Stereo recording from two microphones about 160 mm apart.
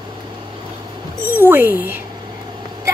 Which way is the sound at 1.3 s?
15° right (ahead or behind).